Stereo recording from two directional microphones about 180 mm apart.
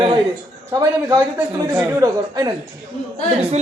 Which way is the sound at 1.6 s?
10° right (ahead or behind).